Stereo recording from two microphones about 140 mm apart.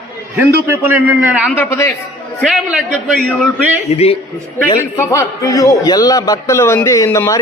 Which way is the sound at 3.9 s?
50° left (ahead or behind).